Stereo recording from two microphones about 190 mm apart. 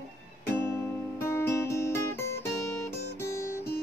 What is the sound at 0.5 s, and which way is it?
Music, 15° left (ahead or behind).